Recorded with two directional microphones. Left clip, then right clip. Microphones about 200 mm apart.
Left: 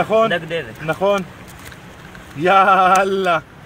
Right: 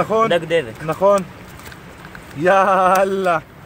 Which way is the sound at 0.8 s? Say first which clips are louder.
Right 1 dB; 5° left (ahead or behind).